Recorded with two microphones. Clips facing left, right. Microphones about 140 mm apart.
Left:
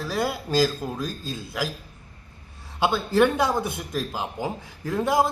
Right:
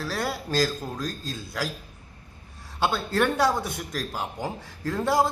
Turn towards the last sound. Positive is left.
turn(degrees=15)  # may be behind; listen again after turning